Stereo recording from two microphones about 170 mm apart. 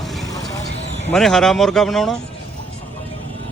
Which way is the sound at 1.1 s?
Centre (ahead or behind).